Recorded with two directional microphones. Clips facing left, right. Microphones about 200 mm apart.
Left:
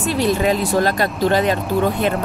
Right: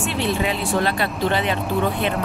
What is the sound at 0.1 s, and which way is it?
A woman's voice, 40° left (ahead or behind).